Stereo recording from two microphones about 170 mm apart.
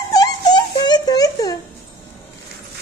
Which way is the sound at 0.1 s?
25° left (ahead or behind).